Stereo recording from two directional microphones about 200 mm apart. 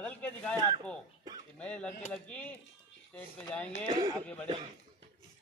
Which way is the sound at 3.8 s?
20° right (ahead or behind).